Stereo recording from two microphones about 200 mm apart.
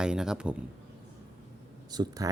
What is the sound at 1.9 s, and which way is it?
Speech, 20° right (ahead or behind).